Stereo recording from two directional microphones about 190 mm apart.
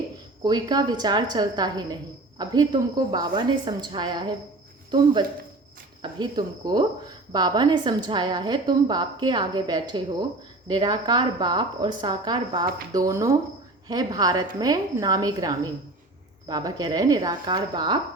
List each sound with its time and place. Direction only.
0.4 s a woman's voice: 20° right (ahead or behind)
6.0 s a woman's voice: 25° right (ahead or behind)